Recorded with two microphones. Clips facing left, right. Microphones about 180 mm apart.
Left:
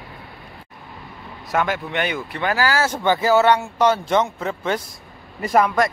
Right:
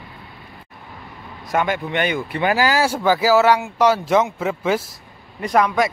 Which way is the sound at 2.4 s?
15° right (ahead or behind).